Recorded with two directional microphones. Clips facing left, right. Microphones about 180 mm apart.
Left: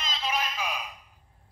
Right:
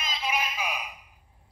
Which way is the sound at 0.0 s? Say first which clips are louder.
Even; 10° right (ahead or behind).